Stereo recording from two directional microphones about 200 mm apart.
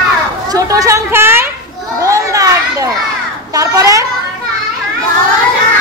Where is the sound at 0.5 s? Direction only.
15° right (ahead or behind).